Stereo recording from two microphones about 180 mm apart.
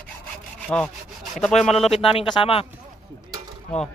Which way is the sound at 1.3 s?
Centre (ahead or behind).